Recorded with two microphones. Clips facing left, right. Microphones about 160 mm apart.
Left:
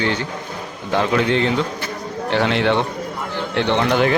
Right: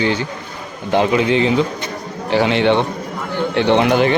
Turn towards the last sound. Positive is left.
turn(degrees=-15)  # may be behind; listen again after turning